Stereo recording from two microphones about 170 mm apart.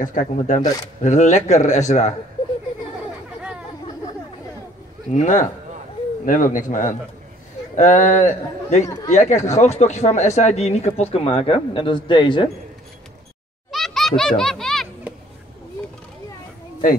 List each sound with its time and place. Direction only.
0.0 s speech: 50° left (ahead or behind)
5.1 s speech: 45° left (ahead or behind)
8.8 s speech: 20° left (ahead or behind)
9.1 s speech: 45° left (ahead or behind); by 12.4 s 30° left (ahead or behind)
13.7 s baby laughter: centre (ahead or behind)